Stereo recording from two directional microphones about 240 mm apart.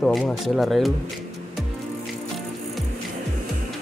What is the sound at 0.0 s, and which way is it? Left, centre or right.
Speech, centre.